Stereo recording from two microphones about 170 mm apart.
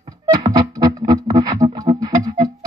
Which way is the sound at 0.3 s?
25° right (ahead or behind).